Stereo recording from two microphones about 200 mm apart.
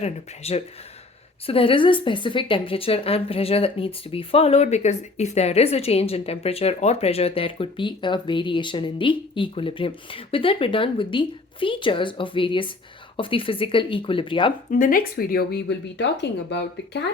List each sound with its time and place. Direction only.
0.0 s a woman's voice: 30° left (ahead or behind)
14.7 s speech: 40° left (ahead or behind); by 17.0 s 60° left (ahead or behind)